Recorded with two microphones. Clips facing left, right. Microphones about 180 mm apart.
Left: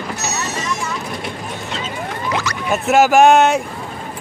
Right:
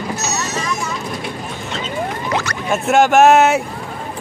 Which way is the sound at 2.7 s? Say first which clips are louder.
Even; centre (ahead or behind).